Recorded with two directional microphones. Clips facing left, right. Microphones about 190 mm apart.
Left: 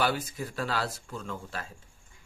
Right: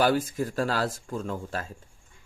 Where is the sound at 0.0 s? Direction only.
45° right (ahead or behind).